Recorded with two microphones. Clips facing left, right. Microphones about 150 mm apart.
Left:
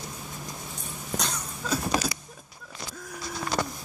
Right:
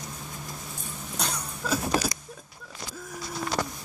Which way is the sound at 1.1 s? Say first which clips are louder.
Left 1 dB; 10° right (ahead or behind).